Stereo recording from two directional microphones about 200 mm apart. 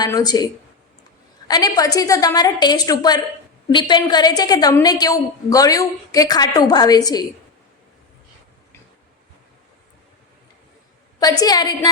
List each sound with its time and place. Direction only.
0.0 s a woman's voice: 20° left (ahead or behind)
11.2 s a woman's voice: 20° left (ahead or behind)